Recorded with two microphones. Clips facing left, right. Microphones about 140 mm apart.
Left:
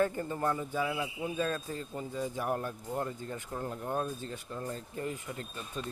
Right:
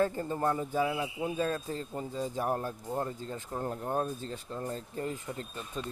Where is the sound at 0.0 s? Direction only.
30° right (ahead or behind).